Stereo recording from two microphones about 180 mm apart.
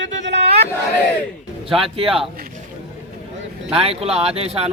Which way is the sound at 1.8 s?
30° right (ahead or behind).